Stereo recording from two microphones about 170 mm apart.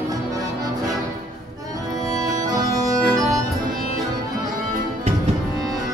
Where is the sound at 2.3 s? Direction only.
20° right (ahead or behind).